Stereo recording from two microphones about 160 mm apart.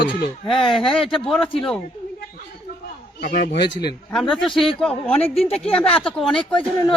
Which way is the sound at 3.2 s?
75° left (ahead or behind).